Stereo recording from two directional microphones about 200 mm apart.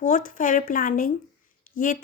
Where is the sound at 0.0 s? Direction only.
40° left (ahead or behind).